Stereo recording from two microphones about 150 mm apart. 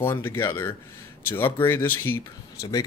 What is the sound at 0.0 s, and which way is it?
Speech, 15° left (ahead or behind).